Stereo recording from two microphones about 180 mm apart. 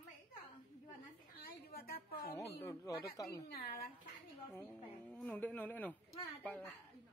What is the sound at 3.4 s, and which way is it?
Speech, 60° left (ahead or behind).